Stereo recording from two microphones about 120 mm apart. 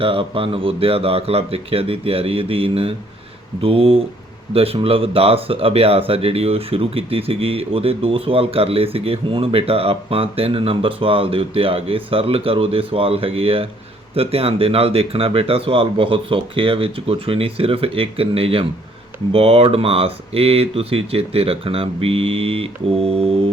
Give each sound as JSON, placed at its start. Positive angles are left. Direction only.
{"t": 0.0, "sound": "speech", "side_deg": -50}